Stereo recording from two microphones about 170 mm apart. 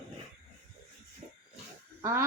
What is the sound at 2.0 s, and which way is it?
Speech, 15° right (ahead or behind).